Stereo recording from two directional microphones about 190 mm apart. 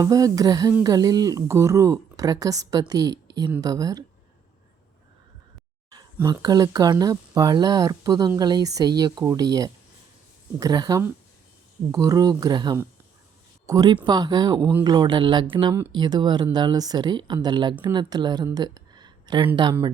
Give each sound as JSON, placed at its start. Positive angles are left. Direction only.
{"t": 0.0, "sound": "speech", "side_deg": -15}
{"t": 6.2, "sound": "speech", "side_deg": -20}